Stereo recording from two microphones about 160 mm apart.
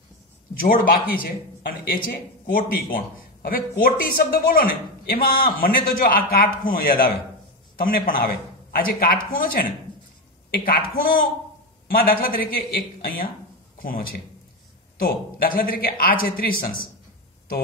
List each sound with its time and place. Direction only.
0.6 s speech: 65° left (ahead or behind)
11.9 s a man's voice: 65° left (ahead or behind)